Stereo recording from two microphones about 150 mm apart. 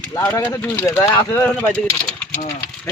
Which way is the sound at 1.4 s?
10° left (ahead or behind).